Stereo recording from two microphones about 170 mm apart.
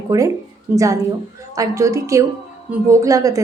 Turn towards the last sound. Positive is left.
turn(degrees=-20)  # may be behind; listen again after turning